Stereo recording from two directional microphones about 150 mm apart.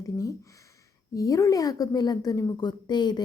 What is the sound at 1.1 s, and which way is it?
A woman's voice, 25° left (ahead or behind).